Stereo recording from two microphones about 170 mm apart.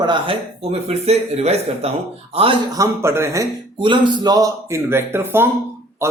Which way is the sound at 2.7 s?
15° right (ahead or behind).